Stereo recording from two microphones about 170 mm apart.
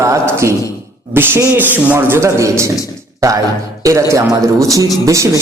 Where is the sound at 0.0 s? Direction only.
15° right (ahead or behind).